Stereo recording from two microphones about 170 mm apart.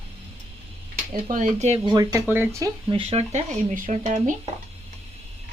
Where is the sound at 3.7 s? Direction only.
50° right (ahead or behind).